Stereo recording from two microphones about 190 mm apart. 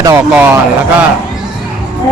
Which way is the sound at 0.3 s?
10° right (ahead or behind).